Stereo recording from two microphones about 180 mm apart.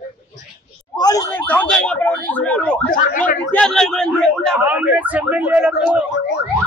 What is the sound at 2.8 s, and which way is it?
Speech, 50° left (ahead or behind).